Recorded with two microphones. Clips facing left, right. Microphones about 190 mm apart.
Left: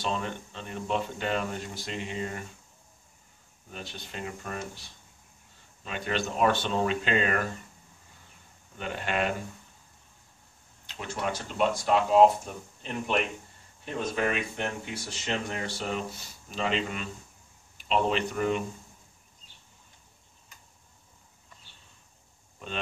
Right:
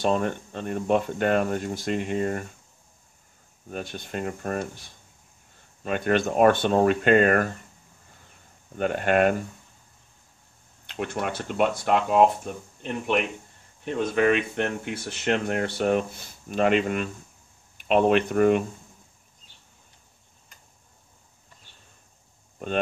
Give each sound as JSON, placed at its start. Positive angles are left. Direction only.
{"t": 0.0, "sound": "speech", "side_deg": -50}
{"t": 3.7, "sound": "speech", "side_deg": -50}
{"t": 8.7, "sound": "speech", "side_deg": -50}
{"t": 10.9, "sound": "speech", "side_deg": -60}